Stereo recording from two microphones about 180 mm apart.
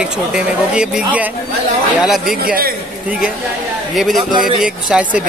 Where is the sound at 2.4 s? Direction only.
55° right (ahead or behind).